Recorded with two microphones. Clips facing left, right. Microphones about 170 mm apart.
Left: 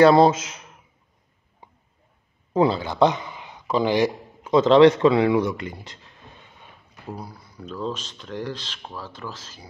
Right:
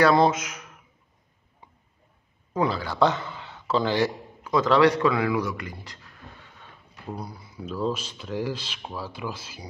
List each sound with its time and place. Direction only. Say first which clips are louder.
0.0 s speech: left 5 dB; 30° left (ahead or behind)
2.5 s speech: left 5 dB; 25° left (ahead or behind)
7.1 s speech: even; 5° left (ahead or behind)
7.6 s speech: right 2 dB; 10° right (ahead or behind)